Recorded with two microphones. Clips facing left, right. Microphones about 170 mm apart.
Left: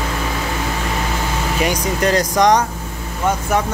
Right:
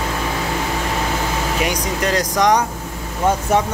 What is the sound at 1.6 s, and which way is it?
Speech, centre (ahead or behind).